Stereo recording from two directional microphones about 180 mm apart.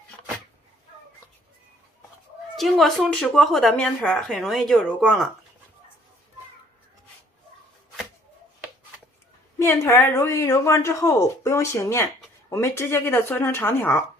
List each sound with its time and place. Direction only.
2.6 s a woman's voice: centre (ahead or behind)
9.6 s a woman's voice: 15° left (ahead or behind)